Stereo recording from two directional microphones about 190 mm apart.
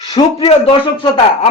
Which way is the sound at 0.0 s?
30° left (ahead or behind).